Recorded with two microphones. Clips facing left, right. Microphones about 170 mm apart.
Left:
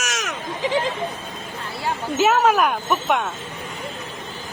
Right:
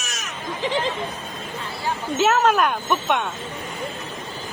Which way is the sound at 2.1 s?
5° left (ahead or behind).